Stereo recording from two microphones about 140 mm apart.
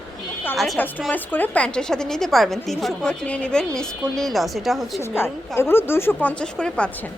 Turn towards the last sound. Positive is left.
turn(degrees=5)  # may be behind; listen again after turning